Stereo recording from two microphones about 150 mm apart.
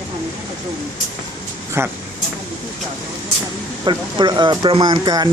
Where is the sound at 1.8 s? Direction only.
15° right (ahead or behind).